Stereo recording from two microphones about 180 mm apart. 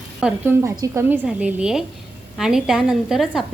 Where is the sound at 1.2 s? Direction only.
5° right (ahead or behind).